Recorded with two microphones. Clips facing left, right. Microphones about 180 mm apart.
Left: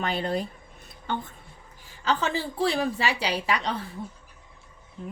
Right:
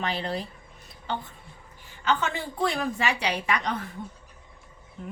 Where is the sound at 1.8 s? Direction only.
35° left (ahead or behind).